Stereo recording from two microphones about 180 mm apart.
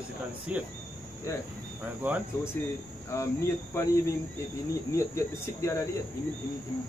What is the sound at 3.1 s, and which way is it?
Speech, 15° left (ahead or behind).